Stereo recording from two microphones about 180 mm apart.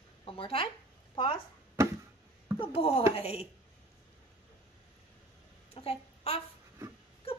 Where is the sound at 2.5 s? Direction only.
35° left (ahead or behind).